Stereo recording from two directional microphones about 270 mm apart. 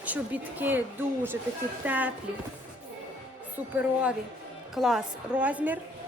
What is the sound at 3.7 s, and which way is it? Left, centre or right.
A woman's voice, centre.